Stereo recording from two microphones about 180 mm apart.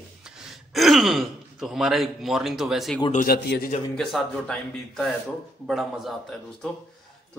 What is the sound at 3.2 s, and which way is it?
Speech, 60° left (ahead or behind).